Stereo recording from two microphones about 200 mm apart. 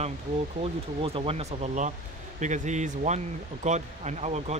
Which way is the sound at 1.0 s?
30° right (ahead or behind).